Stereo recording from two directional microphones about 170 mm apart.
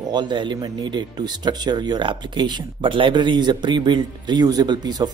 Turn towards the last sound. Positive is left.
turn(degrees=-25)  # may be behind; listen again after turning